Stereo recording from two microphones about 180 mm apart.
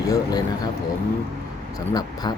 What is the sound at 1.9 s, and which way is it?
Speech, 20° left (ahead or behind).